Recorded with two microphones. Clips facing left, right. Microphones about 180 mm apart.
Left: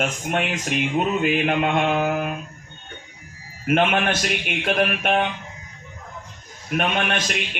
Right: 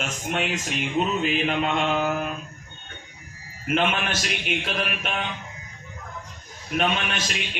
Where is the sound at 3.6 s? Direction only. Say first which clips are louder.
Left 5 dB; 55° left (ahead or behind).